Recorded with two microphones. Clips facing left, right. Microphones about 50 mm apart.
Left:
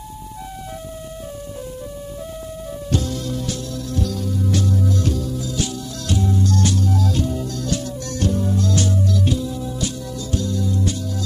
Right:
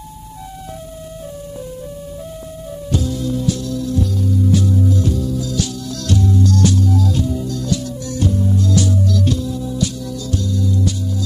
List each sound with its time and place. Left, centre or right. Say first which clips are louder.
2.9 s music: right 4 dB; left
3.4 s music: right 7 dB; left
4.8 s music: right 3 dB; left
5.3 s music: right 3 dB; left
9.2 s music: right 2 dB; centre
9.8 s music: right 4 dB; left